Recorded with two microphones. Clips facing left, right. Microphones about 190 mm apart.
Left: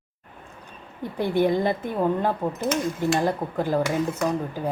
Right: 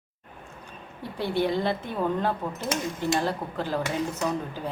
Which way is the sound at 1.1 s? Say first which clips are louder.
Left 4 dB; 15° left (ahead or behind).